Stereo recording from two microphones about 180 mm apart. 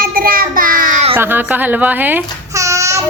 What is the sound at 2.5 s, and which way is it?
Child singing, 15° right (ahead or behind).